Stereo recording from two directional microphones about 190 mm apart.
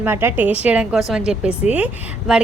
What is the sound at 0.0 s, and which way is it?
A woman's voice, 10° right (ahead or behind).